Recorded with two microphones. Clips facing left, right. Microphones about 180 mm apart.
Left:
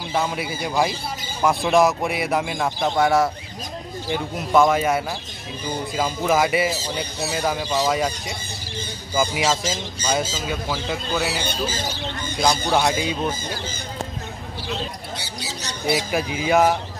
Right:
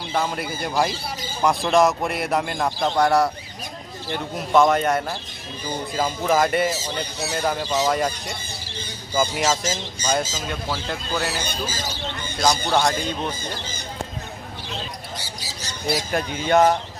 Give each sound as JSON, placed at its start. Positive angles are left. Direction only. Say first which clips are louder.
{"t": 0.1, "sound": "speech", "louder": "left 1 dB", "side_deg": 0}
{"t": 12.4, "sound": "speech", "louder": "even", "side_deg": 5}
{"t": 15.1, "sound": "squawk", "louder": "left 3 dB", "side_deg": 70}
{"t": 16.1, "sound": "speech", "louder": "even", "side_deg": 5}